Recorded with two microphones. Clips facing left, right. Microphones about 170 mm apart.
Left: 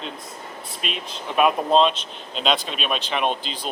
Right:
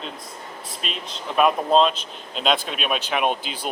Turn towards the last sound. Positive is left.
turn(degrees=-10)  # may be behind; listen again after turning